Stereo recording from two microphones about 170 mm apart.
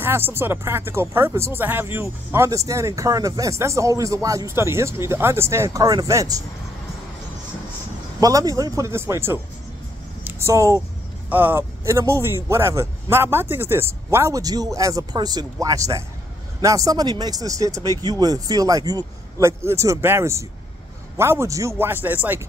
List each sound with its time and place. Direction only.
0.0 s speech: 15° right (ahead or behind)
8.2 s speech: 20° right (ahead or behind)